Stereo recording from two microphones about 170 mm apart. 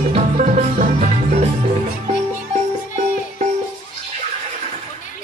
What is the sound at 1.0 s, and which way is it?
Music, 40° right (ahead or behind).